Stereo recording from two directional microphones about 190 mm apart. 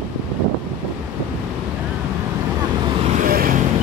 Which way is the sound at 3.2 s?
50° right (ahead or behind).